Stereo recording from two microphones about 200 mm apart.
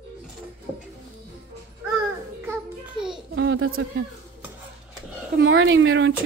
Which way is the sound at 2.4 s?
10° right (ahead or behind).